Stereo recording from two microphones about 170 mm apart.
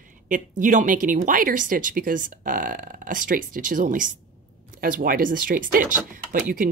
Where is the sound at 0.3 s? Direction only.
50° right (ahead or behind).